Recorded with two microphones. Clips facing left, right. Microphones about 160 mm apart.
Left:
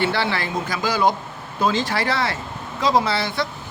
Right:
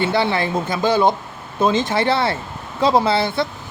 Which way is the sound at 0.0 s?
20° right (ahead or behind).